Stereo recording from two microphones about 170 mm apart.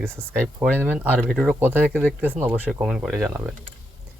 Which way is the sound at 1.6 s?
10° right (ahead or behind).